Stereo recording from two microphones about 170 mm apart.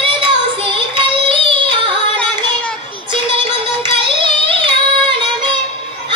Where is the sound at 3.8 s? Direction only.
30° right (ahead or behind).